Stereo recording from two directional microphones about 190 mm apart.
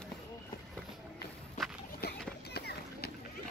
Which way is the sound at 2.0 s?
55° left (ahead or behind).